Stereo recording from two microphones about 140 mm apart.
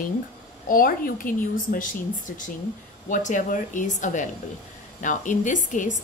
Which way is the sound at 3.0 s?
65° left (ahead or behind).